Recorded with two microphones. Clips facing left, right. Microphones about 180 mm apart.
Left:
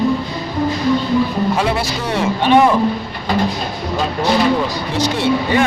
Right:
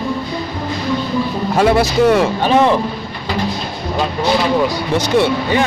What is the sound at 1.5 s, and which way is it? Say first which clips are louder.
Vehicle: right 6 dB; 45° right (ahead or behind).